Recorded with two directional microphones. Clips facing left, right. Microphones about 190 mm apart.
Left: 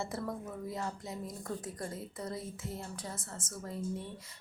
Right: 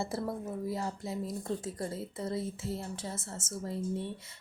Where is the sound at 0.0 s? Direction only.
30° right (ahead or behind).